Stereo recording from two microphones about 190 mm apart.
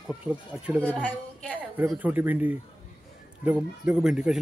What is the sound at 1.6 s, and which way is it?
Speech, 10° right (ahead or behind).